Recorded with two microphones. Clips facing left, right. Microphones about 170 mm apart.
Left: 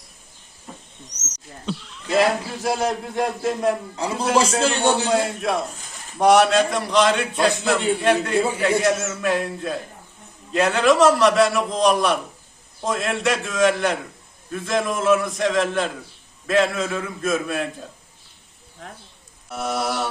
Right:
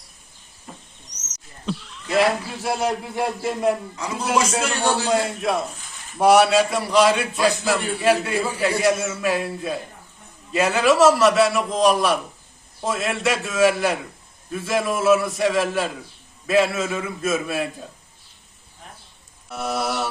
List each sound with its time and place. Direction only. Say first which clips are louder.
0.7 s rodents: left 1 dB; centre (ahead or behind)
1.6 s a man's voice: even; centre (ahead or behind)
3.9 s a man's voice: left 2 dB; 30° left (ahead or behind)
5.0 s a man's voice: even; centre (ahead or behind)
8.4 s speech: left 4 dB; 25° left (ahead or behind)
8.8 s a man's voice: right 1 dB; centre (ahead or behind)
19.5 s speech: even; centre (ahead or behind)